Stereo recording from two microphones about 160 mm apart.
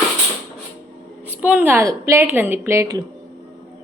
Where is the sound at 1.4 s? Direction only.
10° right (ahead or behind).